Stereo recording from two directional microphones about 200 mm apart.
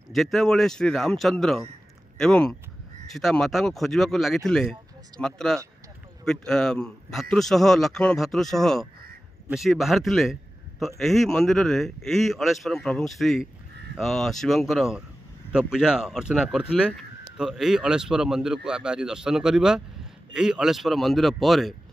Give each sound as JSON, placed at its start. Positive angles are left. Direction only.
{"t": 0.1, "sound": "speech", "side_deg": 0}